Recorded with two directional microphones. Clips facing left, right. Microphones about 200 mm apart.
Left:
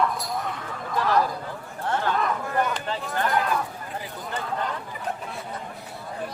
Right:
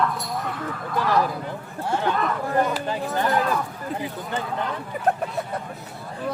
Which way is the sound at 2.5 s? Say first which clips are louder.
Right 5 dB; 35° right (ahead or behind).